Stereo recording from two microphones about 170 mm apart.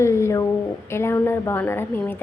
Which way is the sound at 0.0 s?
15° left (ahead or behind).